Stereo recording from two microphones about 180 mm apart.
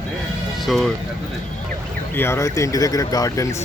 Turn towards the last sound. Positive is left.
turn(degrees=20)  # may be behind; listen again after turning